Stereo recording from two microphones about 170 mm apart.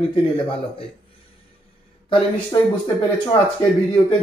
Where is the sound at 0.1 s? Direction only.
35° left (ahead or behind).